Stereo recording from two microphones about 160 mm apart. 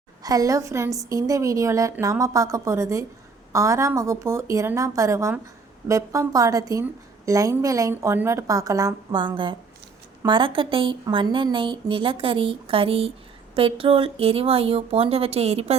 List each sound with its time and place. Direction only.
0.2 s a woman's voice: 20° right (ahead or behind); by 15.7 s 40° right (ahead or behind)